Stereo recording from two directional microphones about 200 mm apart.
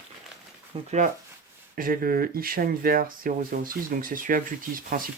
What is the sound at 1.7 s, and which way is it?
Speech, 45° right (ahead or behind).